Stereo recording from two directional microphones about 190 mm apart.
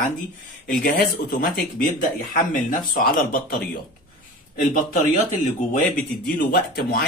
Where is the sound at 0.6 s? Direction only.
50° left (ahead or behind).